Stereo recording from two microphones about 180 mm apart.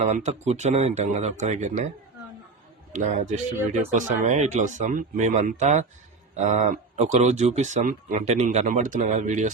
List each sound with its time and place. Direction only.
0.0 s speech: 40° right (ahead or behind)
2.9 s a man's voice: 40° right (ahead or behind)